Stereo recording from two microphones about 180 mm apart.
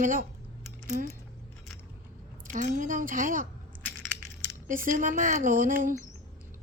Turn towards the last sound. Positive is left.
turn(degrees=-50)  # may be behind; listen again after turning